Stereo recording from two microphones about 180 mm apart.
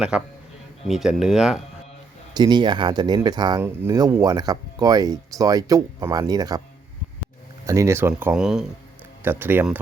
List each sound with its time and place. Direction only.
0.1 s speech: 5° right (ahead or behind)
2.3 s speech: 25° right (ahead or behind)
7.6 s speech: 15° right (ahead or behind)